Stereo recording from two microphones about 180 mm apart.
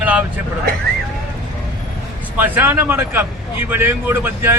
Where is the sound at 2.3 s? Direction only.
10° right (ahead or behind).